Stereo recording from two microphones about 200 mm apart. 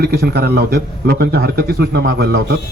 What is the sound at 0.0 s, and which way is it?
A man's voice, 50° right (ahead or behind).